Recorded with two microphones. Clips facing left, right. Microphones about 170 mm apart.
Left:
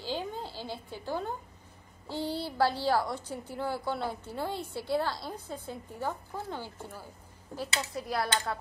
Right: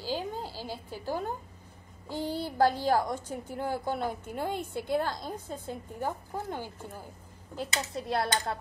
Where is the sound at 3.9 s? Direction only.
15° right (ahead or behind).